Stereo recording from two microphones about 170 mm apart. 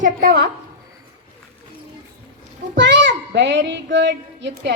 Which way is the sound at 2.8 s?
90° right.